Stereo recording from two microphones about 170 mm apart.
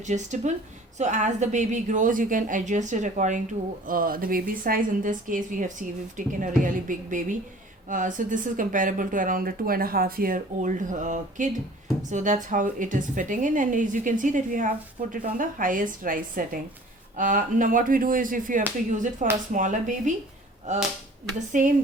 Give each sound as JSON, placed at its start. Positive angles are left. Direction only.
{"t": 0.0, "sound": "speech", "side_deg": -45}
{"t": 3.8, "sound": "speech", "side_deg": -55}